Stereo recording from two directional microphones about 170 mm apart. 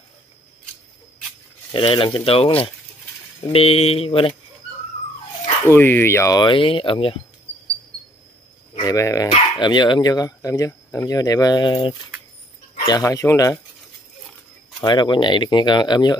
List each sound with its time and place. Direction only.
1.7 s speech: 30° left (ahead or behind)
5.6 s speech: 15° left (ahead or behind); by 7.2 s 30° left (ahead or behind)
8.7 s speech: 20° left (ahead or behind)
14.8 s speech: 25° left (ahead or behind)